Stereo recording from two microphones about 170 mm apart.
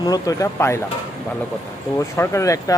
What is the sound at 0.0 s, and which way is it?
Speech, 20° left (ahead or behind).